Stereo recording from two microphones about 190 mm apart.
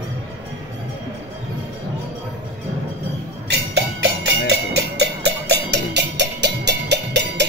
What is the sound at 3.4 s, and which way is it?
Music, 65° right (ahead or behind).